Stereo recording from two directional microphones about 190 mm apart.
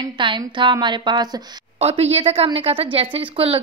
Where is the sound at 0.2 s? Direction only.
25° right (ahead or behind).